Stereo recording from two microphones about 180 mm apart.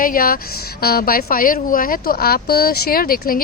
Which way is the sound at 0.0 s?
55° left (ahead or behind).